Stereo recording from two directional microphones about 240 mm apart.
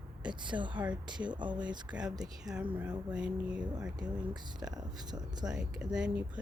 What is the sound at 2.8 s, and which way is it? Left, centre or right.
Speech, centre.